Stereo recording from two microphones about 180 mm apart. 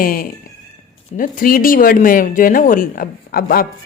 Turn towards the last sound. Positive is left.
turn(degrees=55)  # may be behind; listen again after turning